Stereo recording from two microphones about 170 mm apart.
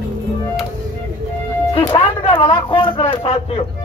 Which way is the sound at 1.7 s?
30° left (ahead or behind).